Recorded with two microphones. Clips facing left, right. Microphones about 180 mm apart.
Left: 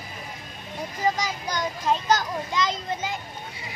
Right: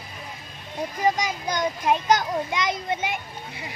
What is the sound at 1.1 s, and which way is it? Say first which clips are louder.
A child's voice: right 2 dB; 20° right (ahead or behind).